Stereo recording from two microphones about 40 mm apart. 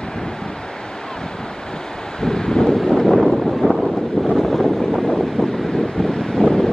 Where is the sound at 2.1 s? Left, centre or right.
Centre.